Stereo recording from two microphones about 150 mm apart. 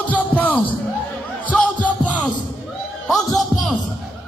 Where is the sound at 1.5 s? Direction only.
10° left (ahead or behind).